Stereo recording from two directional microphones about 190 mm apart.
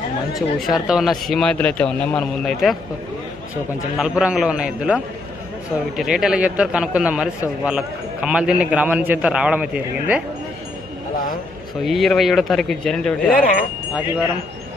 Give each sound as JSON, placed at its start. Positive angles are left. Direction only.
{"t": 0.4, "sound": "a man's voice", "side_deg": 0}
{"t": 4.0, "sound": "a man's voice", "side_deg": -5}
{"t": 11.8, "sound": "a man's voice", "side_deg": 0}
{"t": 13.3, "sound": "speech", "side_deg": 45}